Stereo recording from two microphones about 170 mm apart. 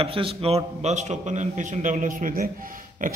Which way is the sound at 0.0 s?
35° right (ahead or behind).